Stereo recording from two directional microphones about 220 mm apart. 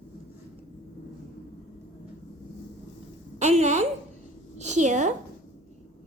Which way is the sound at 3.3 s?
30° right (ahead or behind).